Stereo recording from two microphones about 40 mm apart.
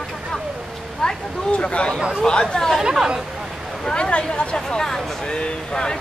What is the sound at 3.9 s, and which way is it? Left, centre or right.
Speech, left.